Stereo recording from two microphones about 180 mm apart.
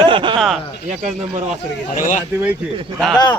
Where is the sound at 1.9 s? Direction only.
50° left (ahead or behind).